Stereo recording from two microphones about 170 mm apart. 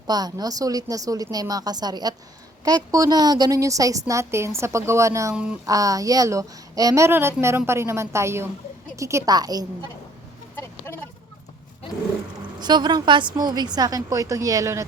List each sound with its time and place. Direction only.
0.1 s a woman's voice: 25° right (ahead or behind)
5.3 s a woman's voice: 5° right (ahead or behind)
5.6 s a woman's voice: 20° right (ahead or behind)
10.5 s a sound: 15° left (ahead or behind)
12.5 s a woman's voice: 25° right (ahead or behind)